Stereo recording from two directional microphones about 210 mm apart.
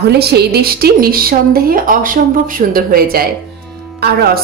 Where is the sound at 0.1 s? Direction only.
50° right (ahead or behind).